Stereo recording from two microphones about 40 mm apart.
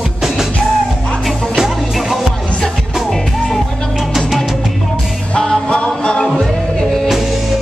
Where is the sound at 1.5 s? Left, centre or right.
Centre.